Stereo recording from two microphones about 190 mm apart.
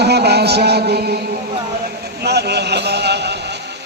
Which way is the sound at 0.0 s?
60° right (ahead or behind).